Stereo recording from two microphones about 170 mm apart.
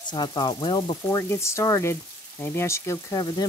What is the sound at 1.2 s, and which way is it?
Speech, 15° left (ahead or behind).